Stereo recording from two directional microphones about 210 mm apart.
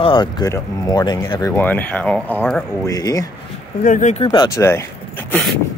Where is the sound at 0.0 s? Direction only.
20° left (ahead or behind).